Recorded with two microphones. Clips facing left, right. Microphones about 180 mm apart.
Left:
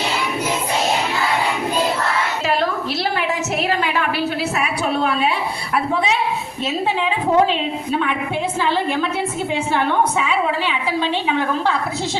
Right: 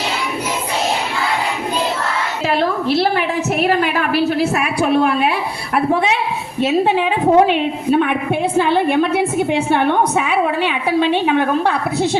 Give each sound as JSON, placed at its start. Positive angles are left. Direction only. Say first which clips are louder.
{"t": 4.5, "sound": "a woman's voice", "louder": "right 5 dB", "side_deg": -55}